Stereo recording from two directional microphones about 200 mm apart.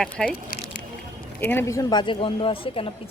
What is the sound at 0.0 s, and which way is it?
Speech, 5° left (ahead or behind).